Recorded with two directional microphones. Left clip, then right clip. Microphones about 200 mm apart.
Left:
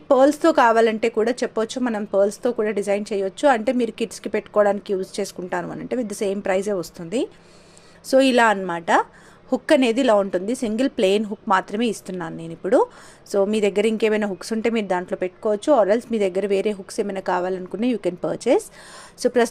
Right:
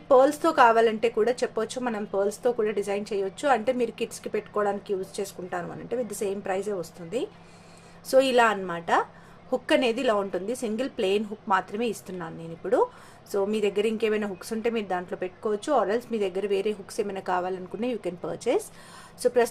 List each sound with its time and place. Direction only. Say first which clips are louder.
0.1 s a woman's voice: left 4 dB; 35° left (ahead or behind)